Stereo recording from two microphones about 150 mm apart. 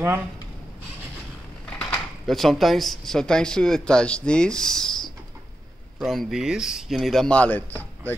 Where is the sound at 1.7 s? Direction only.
5° left (ahead or behind).